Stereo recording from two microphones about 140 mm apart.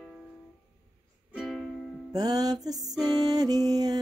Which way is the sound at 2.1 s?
25° right (ahead or behind).